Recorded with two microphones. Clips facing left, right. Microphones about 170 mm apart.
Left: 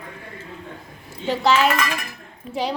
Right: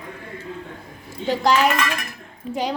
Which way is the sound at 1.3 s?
10° right (ahead or behind).